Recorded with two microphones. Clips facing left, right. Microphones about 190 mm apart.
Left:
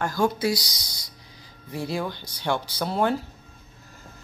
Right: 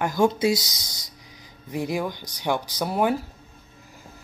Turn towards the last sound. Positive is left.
turn(degrees=-10)  # may be behind; listen again after turning